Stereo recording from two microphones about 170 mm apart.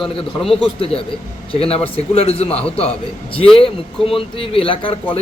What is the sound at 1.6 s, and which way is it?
Speech, 35° left (ahead or behind).